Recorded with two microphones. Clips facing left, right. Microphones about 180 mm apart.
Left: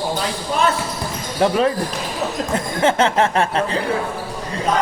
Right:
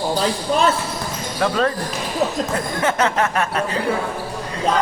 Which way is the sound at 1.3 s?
20° left (ahead or behind).